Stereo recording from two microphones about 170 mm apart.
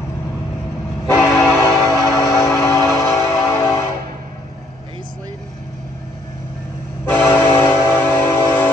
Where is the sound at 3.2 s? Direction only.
15° left (ahead or behind).